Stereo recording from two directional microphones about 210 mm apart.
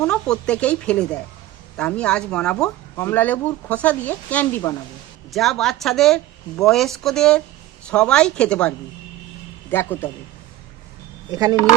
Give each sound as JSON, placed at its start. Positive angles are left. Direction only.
{"t": 0.0, "sound": "speech", "side_deg": 5}
{"t": 11.3, "sound": "speech", "side_deg": -20}